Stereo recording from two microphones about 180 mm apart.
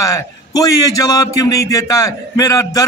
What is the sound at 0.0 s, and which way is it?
A man's voice, 20° left (ahead or behind).